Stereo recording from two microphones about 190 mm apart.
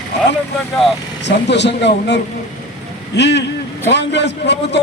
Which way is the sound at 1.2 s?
65° left (ahead or behind).